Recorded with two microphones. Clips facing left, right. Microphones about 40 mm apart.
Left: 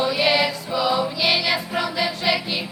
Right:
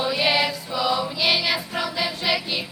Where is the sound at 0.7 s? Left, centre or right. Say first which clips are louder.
Left 2 dB; centre.